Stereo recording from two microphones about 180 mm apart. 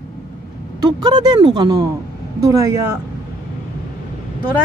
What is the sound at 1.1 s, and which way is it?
A woman's voice, 25° right (ahead or behind).